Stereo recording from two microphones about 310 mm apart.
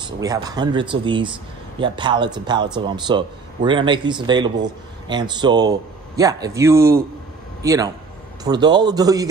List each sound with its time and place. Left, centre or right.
0.0 s a man's voice: centre